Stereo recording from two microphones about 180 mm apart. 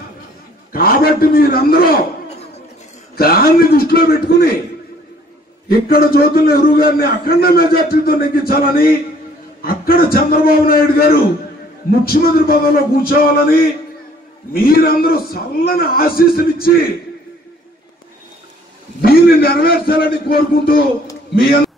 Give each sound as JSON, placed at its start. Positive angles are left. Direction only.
{"t": 0.7, "sound": "a man's voice", "side_deg": 55}
{"t": 5.7, "sound": "a man's voice", "side_deg": 55}
{"t": 18.9, "sound": "a man's voice", "side_deg": 60}